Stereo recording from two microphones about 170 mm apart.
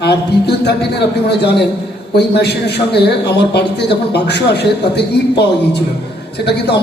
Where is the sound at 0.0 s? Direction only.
75° left (ahead or behind).